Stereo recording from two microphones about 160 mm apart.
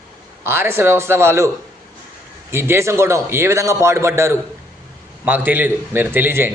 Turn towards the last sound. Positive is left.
turn(degrees=-15)  # may be behind; listen again after turning